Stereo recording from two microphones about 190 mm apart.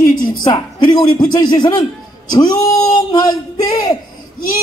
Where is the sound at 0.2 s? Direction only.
20° left (ahead or behind).